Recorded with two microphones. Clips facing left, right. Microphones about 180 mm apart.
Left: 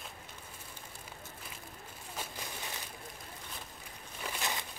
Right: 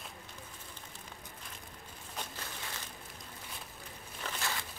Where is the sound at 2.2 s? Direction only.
10° left (ahead or behind).